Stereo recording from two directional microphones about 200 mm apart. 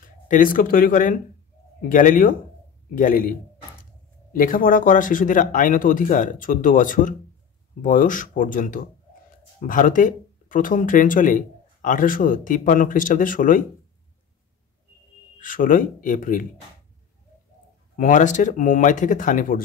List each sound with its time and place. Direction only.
0.0 s speech: 45° left (ahead or behind)
15.3 s speech: 40° left (ahead or behind)
17.9 s speech: 40° left (ahead or behind)